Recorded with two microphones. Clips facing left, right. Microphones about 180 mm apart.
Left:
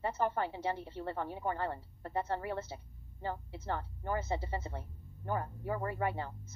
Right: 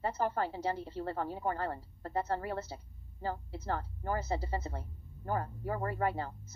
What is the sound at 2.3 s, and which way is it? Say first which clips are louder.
Speech: right 1 dB; 20° left (ahead or behind).